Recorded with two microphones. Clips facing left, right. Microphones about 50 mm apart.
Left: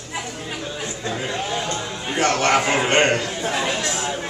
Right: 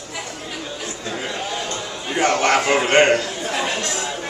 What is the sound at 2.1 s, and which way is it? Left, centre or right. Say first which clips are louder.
A man's voice: right 1 dB; centre.